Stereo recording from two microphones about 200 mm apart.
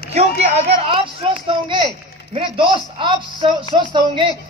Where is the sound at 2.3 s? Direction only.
25° right (ahead or behind).